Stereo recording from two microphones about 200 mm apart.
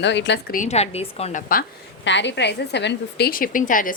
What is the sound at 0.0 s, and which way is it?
Speech, 60° left (ahead or behind).